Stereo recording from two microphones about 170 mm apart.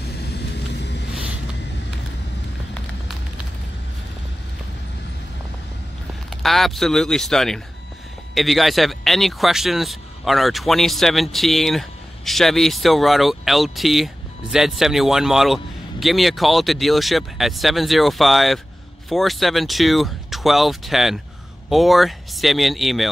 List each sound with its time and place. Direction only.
0.0 s vehicle: 70° left (ahead or behind)
6.3 s speech: centre (ahead or behind)